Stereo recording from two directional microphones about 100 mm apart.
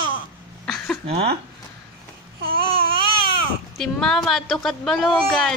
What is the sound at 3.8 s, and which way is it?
A woman's voice, 5° left (ahead or behind).